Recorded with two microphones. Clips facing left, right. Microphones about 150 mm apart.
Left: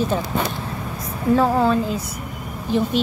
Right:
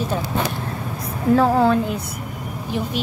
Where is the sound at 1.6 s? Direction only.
65° right (ahead or behind).